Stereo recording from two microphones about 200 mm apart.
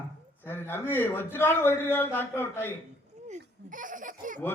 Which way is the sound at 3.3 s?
40° right (ahead or behind).